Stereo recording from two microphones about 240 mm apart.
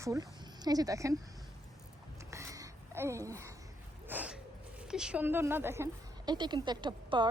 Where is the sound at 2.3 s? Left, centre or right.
Centre.